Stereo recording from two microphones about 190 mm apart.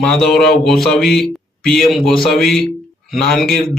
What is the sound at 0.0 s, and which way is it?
Speech, 5° left (ahead or behind).